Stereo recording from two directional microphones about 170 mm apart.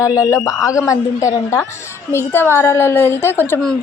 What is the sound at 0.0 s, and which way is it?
A woman's voice, 20° left (ahead or behind).